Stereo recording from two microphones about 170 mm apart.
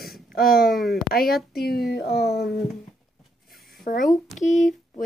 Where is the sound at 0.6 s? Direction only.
Centre (ahead or behind).